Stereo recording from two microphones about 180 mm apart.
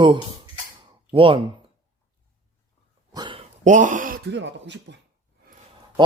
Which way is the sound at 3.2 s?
30° right (ahead or behind).